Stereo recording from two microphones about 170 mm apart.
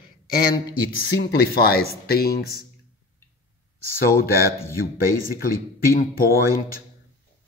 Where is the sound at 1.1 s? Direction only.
65° left (ahead or behind).